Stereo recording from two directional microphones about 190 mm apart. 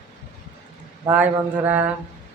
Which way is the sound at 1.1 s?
10° right (ahead or behind).